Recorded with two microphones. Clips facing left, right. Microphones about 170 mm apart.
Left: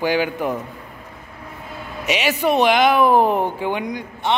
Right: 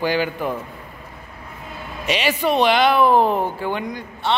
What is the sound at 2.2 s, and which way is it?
A man's voice, 15° left (ahead or behind).